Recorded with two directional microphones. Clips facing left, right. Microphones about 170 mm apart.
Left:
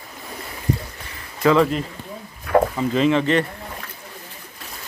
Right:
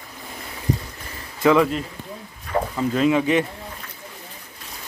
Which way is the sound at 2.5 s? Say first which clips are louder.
Left 7 dB; 65° left (ahead or behind).